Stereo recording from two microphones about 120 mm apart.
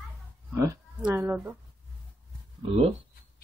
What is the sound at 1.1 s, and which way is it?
Speech, 20° right (ahead or behind).